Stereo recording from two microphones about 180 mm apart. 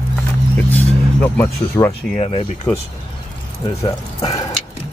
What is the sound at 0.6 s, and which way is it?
Music, 10° left (ahead or behind).